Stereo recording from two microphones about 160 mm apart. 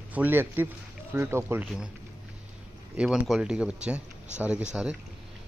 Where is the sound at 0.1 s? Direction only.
10° right (ahead or behind).